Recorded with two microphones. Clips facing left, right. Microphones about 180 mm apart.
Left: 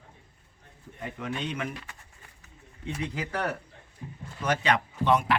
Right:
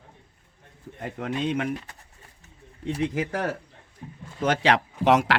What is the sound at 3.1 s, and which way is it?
Speech, 55° right (ahead or behind).